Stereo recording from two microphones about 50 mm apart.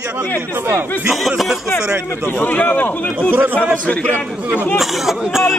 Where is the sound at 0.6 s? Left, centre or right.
Right.